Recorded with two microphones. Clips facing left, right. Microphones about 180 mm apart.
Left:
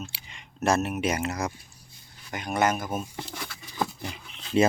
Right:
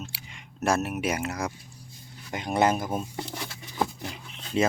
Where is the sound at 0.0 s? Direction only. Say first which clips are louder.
Left 1 dB; 5° right (ahead or behind).